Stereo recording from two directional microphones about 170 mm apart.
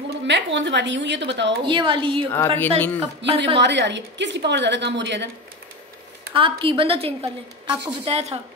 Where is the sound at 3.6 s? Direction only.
90° right.